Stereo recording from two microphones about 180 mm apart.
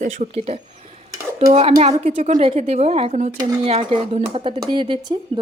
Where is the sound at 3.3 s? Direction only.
20° right (ahead or behind).